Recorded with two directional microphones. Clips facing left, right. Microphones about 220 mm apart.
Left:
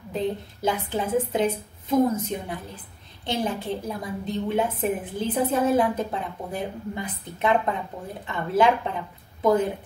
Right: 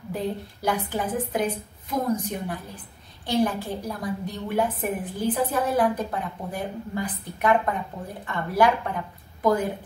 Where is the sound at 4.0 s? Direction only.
25° left (ahead or behind).